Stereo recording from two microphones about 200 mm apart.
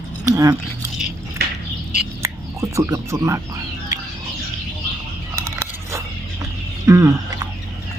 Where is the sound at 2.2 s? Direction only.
15° right (ahead or behind).